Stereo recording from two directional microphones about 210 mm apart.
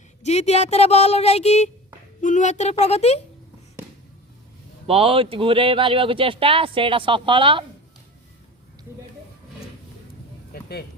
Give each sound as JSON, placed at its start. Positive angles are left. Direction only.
{"t": 0.2, "sound": "speech", "side_deg": 30}
{"t": 4.9, "sound": "speech", "side_deg": -25}
{"t": 10.5, "sound": "a sound", "side_deg": 50}